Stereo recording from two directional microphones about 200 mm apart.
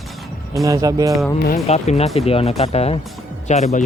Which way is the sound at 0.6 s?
15° right (ahead or behind).